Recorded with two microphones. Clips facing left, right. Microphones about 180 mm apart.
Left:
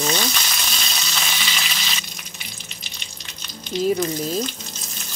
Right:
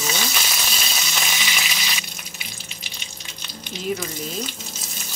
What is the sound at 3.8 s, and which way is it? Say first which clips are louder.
Speech: left 6 dB; 40° left (ahead or behind).